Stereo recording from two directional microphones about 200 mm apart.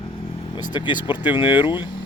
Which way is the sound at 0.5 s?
20° left (ahead or behind).